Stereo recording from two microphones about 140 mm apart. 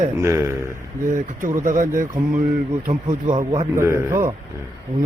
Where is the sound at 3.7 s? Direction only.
20° right (ahead or behind).